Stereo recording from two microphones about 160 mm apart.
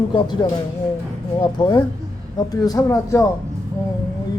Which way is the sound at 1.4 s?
30° left (ahead or behind).